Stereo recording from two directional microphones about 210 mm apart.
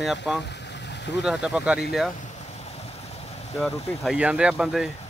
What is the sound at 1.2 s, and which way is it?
Speech, 5° right (ahead or behind).